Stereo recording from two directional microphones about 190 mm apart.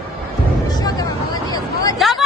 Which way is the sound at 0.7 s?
20° left (ahead or behind).